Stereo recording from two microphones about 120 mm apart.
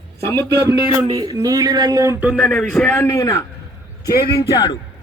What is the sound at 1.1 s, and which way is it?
Speech, 30° right (ahead or behind).